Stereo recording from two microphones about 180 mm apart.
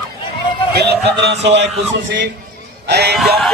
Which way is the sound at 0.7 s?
65° right (ahead or behind).